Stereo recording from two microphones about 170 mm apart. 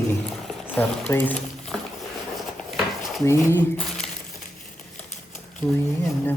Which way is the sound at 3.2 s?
15° left (ahead or behind).